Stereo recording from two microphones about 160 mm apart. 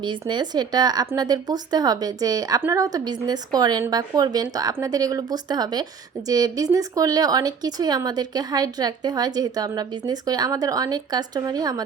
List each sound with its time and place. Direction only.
0.0 s speech: 30° right (ahead or behind)